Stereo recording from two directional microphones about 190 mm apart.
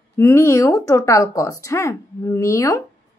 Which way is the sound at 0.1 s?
15° left (ahead or behind).